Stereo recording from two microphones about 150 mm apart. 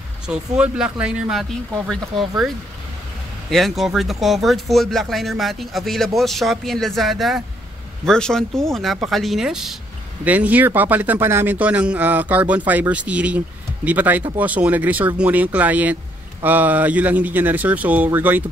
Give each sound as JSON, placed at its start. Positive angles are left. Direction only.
{"t": 0.3, "sound": "speech", "side_deg": -5}